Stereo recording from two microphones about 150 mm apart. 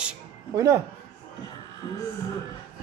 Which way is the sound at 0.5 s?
20° right (ahead or behind).